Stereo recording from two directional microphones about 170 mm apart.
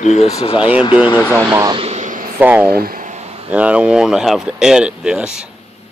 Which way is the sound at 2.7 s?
60° right (ahead or behind).